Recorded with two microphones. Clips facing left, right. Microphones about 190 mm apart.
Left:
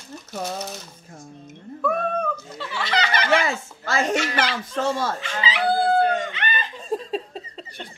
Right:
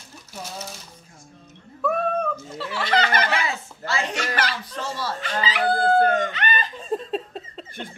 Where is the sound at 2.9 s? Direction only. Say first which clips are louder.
Right 2 dB; 50° right (ahead or behind).